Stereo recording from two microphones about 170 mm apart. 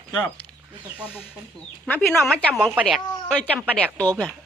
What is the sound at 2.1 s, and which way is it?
A woman's voice, 5° left (ahead or behind).